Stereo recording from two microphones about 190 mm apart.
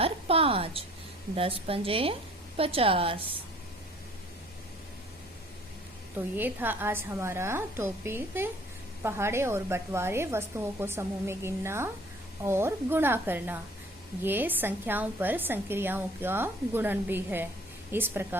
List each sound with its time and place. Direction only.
0.0 s a woman's voice: 30° right (ahead or behind)
6.3 s a woman's voice: 10° right (ahead or behind)